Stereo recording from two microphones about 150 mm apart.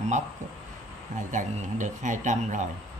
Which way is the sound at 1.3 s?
55° right (ahead or behind).